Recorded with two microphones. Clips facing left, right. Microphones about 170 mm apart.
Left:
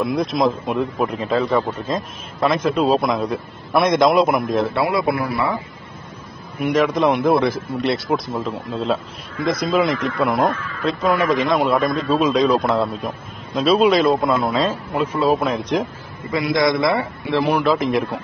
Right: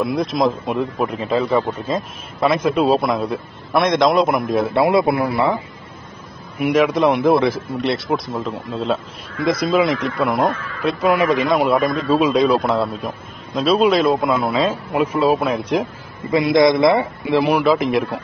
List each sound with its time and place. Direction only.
0.0 s speech: centre (ahead or behind)
4.7 s a man's voice: 25° right (ahead or behind)
6.6 s speech: 5° right (ahead or behind)
10.8 s speech: 10° right (ahead or behind)
16.3 s a man's voice: 20° right (ahead or behind)
17.5 s speech: centre (ahead or behind)